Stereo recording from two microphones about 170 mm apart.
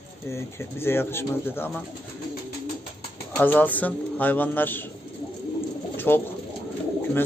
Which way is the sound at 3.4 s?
10° left (ahead or behind).